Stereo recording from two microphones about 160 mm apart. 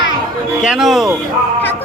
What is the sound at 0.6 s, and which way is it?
Speech, 5° right (ahead or behind).